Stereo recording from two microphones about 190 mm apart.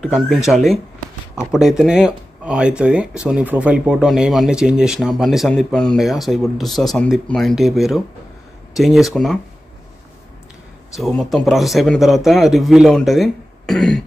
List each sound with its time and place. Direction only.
0.0 s speech: centre (ahead or behind)
10.9 s speech: centre (ahead or behind)